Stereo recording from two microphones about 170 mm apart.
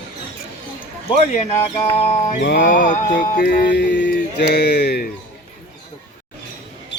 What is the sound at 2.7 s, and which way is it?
Music, 50° left (ahead or behind).